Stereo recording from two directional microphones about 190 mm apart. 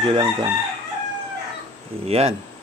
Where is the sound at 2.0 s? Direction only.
30° right (ahead or behind).